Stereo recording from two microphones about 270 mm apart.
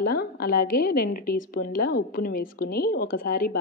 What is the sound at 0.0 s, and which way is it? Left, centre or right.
A woman's voice, left.